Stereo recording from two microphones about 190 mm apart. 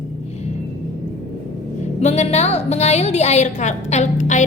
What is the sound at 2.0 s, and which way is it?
A woman's voice, 35° left (ahead or behind).